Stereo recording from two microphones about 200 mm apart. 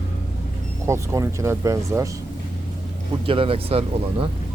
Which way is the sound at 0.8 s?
15° right (ahead or behind).